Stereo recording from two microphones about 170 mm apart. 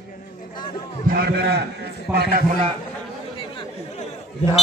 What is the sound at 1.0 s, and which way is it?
Speech, 60° right (ahead or behind).